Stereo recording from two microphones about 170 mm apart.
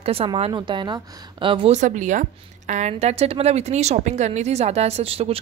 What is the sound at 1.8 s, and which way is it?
Speech, 45° right (ahead or behind).